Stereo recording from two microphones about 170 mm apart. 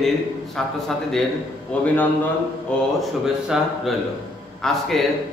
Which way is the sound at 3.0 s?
Centre (ahead or behind).